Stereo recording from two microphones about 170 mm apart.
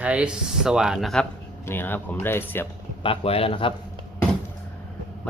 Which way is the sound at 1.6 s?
15° left (ahead or behind).